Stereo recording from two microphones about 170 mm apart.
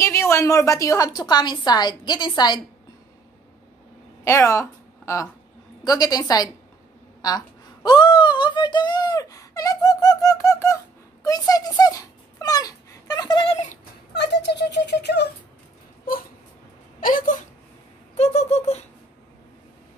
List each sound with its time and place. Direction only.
0.0 s a woman's voice: 15° left (ahead or behind)
4.2 s a woman's voice: 15° left (ahead or behind)
11.2 s a sound: 20° left (ahead or behind)
14.1 s speech: 80° left
17.0 s speech: 55° left (ahead or behind)
18.1 s a sound: 40° left (ahead or behind)